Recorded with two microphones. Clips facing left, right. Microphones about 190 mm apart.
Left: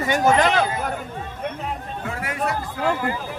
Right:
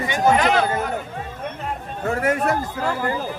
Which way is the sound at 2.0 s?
45° right (ahead or behind).